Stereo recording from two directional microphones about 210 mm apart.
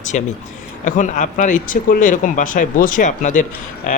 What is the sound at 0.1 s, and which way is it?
Speech, 35° left (ahead or behind).